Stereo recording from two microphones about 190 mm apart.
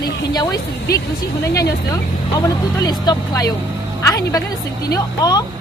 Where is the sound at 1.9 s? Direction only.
20° left (ahead or behind).